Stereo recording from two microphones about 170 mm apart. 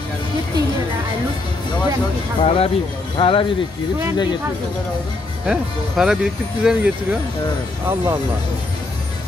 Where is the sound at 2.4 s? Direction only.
35° left (ahead or behind).